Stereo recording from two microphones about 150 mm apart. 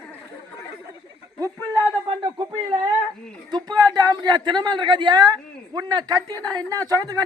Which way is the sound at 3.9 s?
25° right (ahead or behind).